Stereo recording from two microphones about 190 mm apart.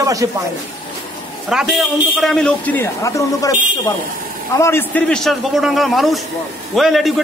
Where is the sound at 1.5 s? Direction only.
Centre (ahead or behind); by 3.5 s 15° left (ahead or behind).